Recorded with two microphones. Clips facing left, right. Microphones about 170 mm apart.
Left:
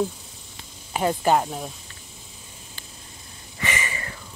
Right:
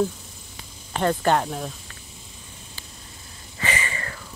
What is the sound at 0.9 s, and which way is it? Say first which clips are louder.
Speech: even; 10° left (ahead or behind).